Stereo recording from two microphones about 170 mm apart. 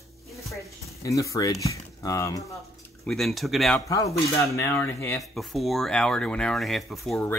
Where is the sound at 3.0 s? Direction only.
Centre (ahead or behind).